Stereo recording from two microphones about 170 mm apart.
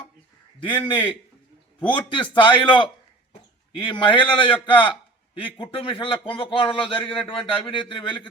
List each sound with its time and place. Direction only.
0.6 s a man's voice: 30° left (ahead or behind)